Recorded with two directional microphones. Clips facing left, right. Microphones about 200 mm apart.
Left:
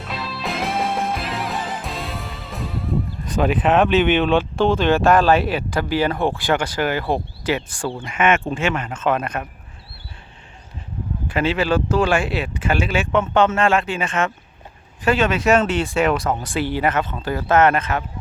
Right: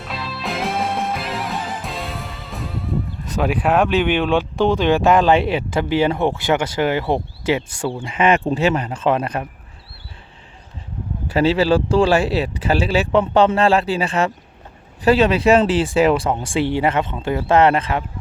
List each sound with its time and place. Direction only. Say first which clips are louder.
0.1 s music: even; centre (ahead or behind)
4.0 s speech: left 1 dB; 10° right (ahead or behind); by 9.5 s 30° right (ahead or behind)
11.3 s speech: right 4 dB; 35° right (ahead or behind)